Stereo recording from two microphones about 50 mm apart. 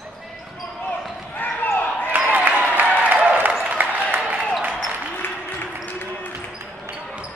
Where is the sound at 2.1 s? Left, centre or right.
Right.